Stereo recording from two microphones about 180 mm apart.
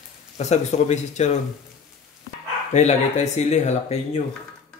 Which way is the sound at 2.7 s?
40° left (ahead or behind).